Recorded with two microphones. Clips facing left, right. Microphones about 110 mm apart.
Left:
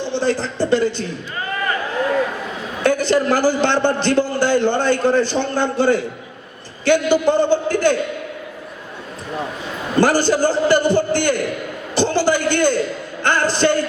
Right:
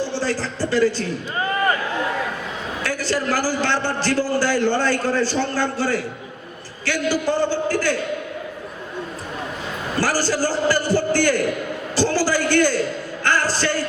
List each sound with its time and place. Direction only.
0.0 s a woman's voice: 20° left (ahead or behind)
2.8 s a man's voice: 20° left (ahead or behind)
10.0 s a man's voice: 20° left (ahead or behind)
11.9 s a sound: 20° left (ahead or behind)
13.2 s a man's voice: 20° left (ahead or behind)